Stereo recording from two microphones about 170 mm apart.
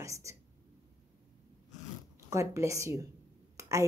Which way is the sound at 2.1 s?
20° right (ahead or behind).